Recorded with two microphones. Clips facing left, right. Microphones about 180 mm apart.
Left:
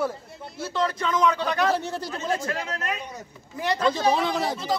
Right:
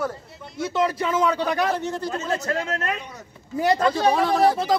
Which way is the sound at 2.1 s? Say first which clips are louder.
Left 1 dB; 45° right (ahead or behind).